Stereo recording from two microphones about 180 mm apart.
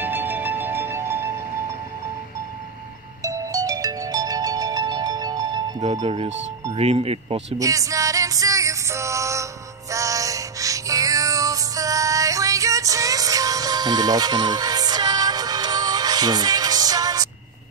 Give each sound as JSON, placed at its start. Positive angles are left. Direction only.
{"t": 0.0, "sound": "music", "side_deg": -10}
{"t": 3.2, "sound": "ringtone", "side_deg": -20}
{"t": 5.9, "sound": "speech", "side_deg": -30}
{"t": 7.5, "sound": "music", "side_deg": -20}